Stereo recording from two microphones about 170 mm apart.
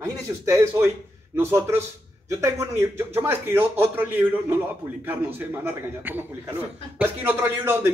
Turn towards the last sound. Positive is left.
turn(degrees=-10)  # may be behind; listen again after turning